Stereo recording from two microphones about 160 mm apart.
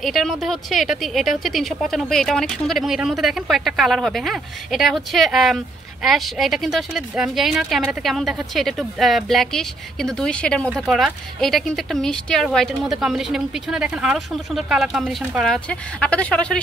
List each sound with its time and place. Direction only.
0.0 s speech: centre (ahead or behind)